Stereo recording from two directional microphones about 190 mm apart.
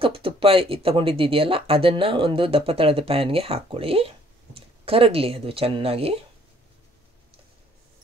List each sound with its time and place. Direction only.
0.0 s speech: 30° right (ahead or behind)